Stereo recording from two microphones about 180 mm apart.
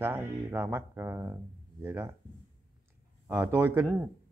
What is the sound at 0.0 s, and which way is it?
Speech, 10° right (ahead or behind).